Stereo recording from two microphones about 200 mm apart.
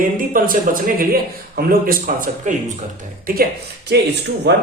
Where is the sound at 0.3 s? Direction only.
45° right (ahead or behind).